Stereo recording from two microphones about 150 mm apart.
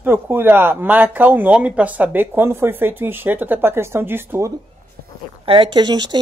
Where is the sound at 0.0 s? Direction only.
15° right (ahead or behind).